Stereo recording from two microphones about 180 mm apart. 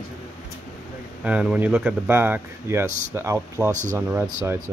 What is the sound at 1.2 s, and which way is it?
Speech, 5° right (ahead or behind).